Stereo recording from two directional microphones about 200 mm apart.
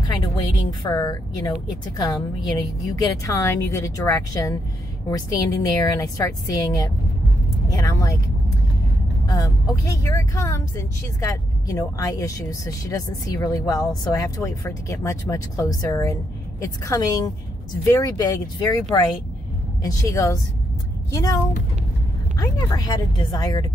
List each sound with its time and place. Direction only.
0.7 s speech: 20° left (ahead or behind)
9.3 s speech: 20° left (ahead or behind)
19.8 s speech: 15° left (ahead or behind)